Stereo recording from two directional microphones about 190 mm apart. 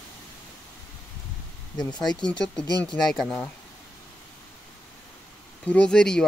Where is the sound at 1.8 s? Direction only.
20° left (ahead or behind).